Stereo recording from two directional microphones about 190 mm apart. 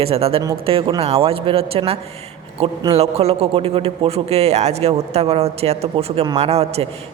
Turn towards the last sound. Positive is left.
turn(degrees=-35)  # may be behind; listen again after turning